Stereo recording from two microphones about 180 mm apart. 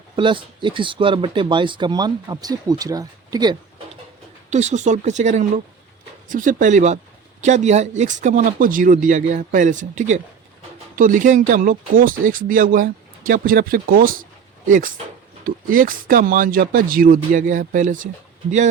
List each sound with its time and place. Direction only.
0.2 s speech: 25° right (ahead or behind)
4.4 s speech: 40° right (ahead or behind)